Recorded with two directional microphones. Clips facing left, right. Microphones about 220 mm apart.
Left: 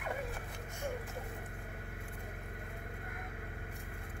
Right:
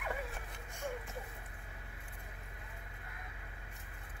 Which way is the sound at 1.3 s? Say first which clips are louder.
Left 7 dB; 55° left (ahead or behind).